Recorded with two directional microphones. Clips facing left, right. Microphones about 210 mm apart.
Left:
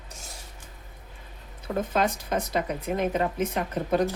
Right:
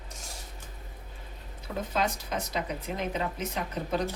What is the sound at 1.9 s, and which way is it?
Speech, 55° left (ahead or behind).